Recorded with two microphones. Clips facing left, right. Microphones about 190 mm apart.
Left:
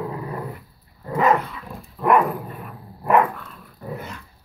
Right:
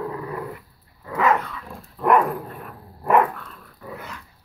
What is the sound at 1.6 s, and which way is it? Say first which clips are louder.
Dog: left 1 dB; 5° left (ahead or behind).